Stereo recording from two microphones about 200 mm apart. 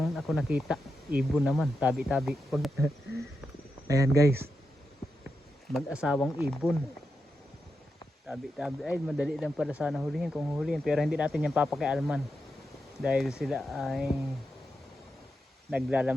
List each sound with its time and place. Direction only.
0.0 s speech: centre (ahead or behind)
3.8 s speech: 15° right (ahead or behind)
5.7 s speech: 5° right (ahead or behind)
8.3 s speech: centre (ahead or behind)
15.7 s speech: 5° right (ahead or behind)